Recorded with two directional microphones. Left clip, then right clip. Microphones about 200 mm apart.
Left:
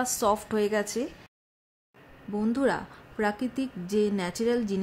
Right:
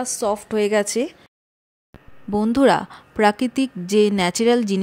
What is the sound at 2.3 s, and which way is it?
A woman's voice, 45° right (ahead or behind).